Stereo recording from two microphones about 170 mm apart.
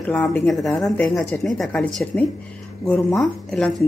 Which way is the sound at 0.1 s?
5° left (ahead or behind).